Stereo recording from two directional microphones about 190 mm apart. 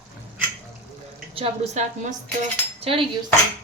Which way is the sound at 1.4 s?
40° right (ahead or behind).